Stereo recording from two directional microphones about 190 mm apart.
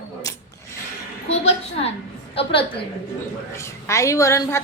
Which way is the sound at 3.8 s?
15° left (ahead or behind).